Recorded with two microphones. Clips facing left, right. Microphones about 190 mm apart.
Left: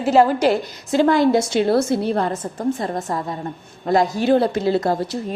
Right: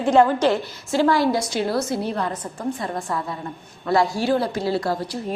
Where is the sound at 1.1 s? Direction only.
20° left (ahead or behind).